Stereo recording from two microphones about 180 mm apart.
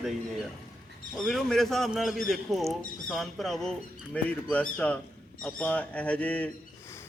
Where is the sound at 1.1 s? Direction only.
Centre (ahead or behind).